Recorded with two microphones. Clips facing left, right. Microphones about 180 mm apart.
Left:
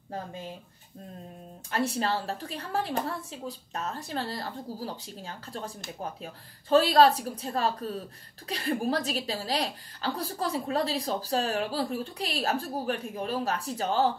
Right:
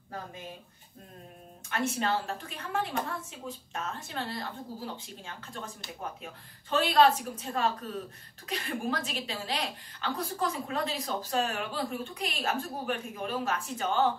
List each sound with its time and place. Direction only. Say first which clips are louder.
0.1 s a woman's voice: left 4 dB; 30° left (ahead or behind)
1.7 s a woman's voice: left 2 dB; 35° left (ahead or behind)